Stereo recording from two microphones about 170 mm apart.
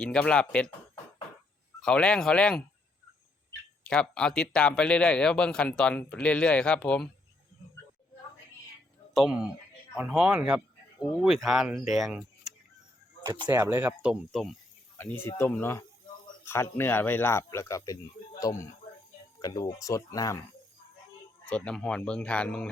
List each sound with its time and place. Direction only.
0.0 s a man's voice: 5° left (ahead or behind)
1.8 s a man's voice: 5° left (ahead or behind)
3.8 s a man's voice: 5° left (ahead or behind)
9.1 s a man's voice: 5° right (ahead or behind)
13.5 s speech: 15° right (ahead or behind)
14.9 s speech: 10° left (ahead or behind)
21.5 s speech: 5° left (ahead or behind)